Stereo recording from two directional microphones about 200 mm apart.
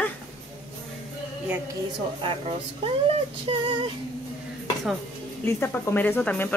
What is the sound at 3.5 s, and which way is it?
Female singing, 25° right (ahead or behind).